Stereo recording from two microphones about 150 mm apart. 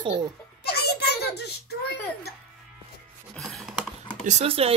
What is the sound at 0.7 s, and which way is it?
A child's voice, 90° left.